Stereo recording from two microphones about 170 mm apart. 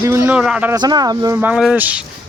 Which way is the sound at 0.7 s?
25° right (ahead or behind).